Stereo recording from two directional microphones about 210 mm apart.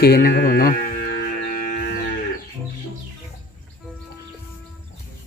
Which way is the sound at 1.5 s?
40° left (ahead or behind).